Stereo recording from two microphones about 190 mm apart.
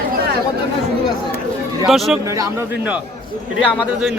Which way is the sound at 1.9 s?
Centre (ahead or behind).